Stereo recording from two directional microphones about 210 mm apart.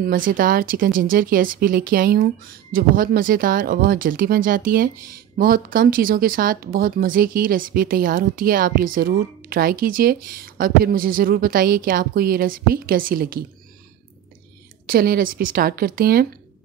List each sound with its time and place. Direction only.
0.0 s speech: 40° right (ahead or behind)
14.9 s speech: 45° right (ahead or behind)